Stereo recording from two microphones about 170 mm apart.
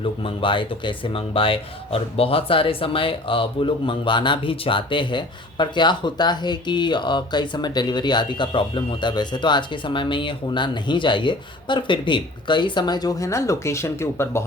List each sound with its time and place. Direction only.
0.0 s speech: 35° left (ahead or behind); by 14.4 s 15° left (ahead or behind)